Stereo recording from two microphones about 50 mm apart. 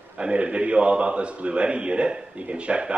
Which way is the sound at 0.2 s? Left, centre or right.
Right.